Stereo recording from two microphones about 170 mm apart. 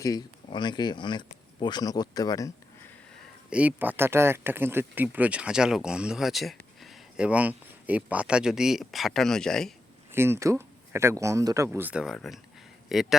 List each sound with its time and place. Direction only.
0.0 s speech: 25° left (ahead or behind)
3.5 s speech: 10° right (ahead or behind)
10.1 s speech: 15° right (ahead or behind)